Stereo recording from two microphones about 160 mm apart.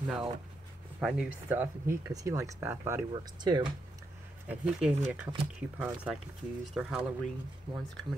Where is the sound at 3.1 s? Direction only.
30° right (ahead or behind).